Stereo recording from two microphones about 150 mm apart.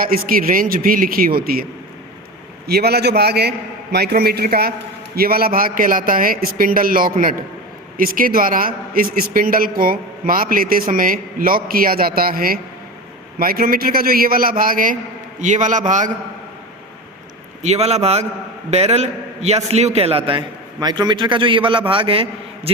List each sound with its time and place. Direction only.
0.0 s a man's voice: 75° right (ahead or behind)
2.6 s a man's voice: 90° right; by 14.9 s 65° right (ahead or behind)
15.4 s a man's voice: 55° right (ahead or behind)
17.6 s a man's voice: 45° right (ahead or behind)
20.7 s a man's voice: 30° right (ahead or behind)